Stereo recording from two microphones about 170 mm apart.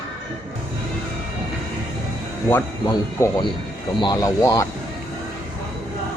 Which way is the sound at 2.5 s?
15° left (ahead or behind).